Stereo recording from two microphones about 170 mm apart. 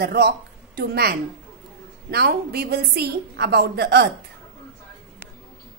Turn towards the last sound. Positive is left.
turn(degrees=-75)  # may be behind; listen again after turning